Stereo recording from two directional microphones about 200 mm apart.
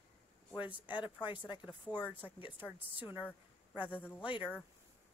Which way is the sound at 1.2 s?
25° left (ahead or behind).